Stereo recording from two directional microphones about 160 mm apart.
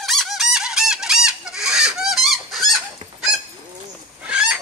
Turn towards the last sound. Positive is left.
turn(degrees=-5)  # may be behind; listen again after turning